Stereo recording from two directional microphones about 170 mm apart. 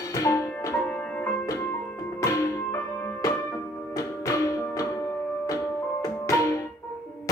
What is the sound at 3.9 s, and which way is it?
Music, 20° left (ahead or behind).